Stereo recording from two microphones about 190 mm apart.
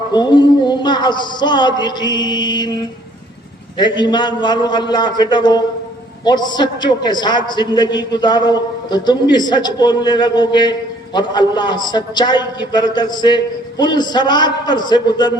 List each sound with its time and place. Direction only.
0.1 s a man's voice: 25° left (ahead or behind)